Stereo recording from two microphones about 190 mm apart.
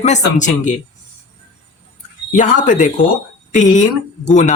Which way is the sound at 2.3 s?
40° left (ahead or behind).